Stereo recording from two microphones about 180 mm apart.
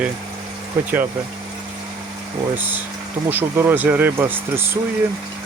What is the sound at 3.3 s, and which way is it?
Speech, 10° right (ahead or behind).